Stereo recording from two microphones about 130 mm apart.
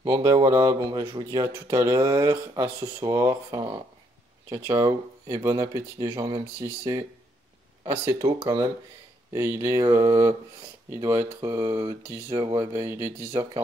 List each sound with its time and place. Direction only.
0.0 s speech: 25° right (ahead or behind)
1.5 s speech: 25° right (ahead or behind)
2.0 s speech: 35° right (ahead or behind)
11.6 s speech: 35° right (ahead or behind)
12.1 s speech: 25° right (ahead or behind)